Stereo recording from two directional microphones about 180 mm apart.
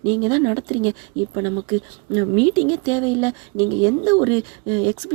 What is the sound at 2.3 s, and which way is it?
Speech, 20° right (ahead or behind).